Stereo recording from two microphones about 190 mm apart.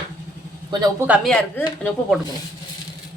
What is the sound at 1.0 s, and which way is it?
Speech, 5° right (ahead or behind).